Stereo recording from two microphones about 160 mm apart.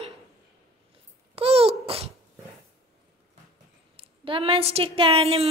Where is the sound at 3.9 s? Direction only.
35° right (ahead or behind).